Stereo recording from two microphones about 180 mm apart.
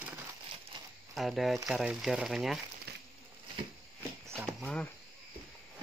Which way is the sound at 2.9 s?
65° right (ahead or behind).